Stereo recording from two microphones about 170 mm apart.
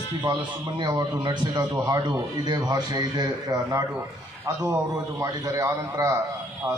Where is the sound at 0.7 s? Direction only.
25° right (ahead or behind).